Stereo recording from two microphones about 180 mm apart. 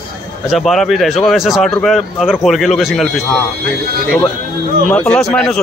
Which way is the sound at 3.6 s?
55° right (ahead or behind).